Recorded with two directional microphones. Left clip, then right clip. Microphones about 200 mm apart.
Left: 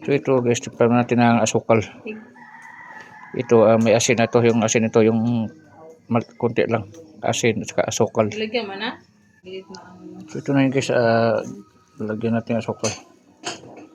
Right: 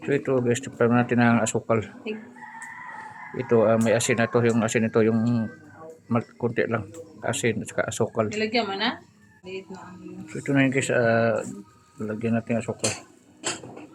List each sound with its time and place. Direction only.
0.0 s speech: 20° left (ahead or behind)
3.0 s speech: 25° left (ahead or behind)
8.4 s speech: 35° right (ahead or behind)
10.2 s speech: 15° left (ahead or behind)